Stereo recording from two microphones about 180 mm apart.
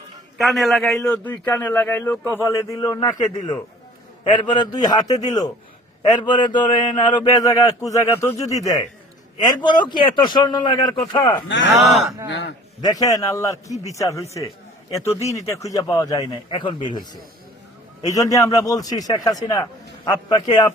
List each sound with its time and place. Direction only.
0.3 s a man's voice: centre (ahead or behind); by 3.2 s 20° left (ahead or behind)
4.3 s a man's voice: 25° left (ahead or behind)
9.9 s a man's voice: 25° left (ahead or behind)
11.4 s speech: 90° left
11.7 s speech: centre (ahead or behind)
12.3 s a man's voice: 85° left
12.8 s a man's voice: 20° left (ahead or behind)
18.0 s a man's voice: 20° left (ahead or behind)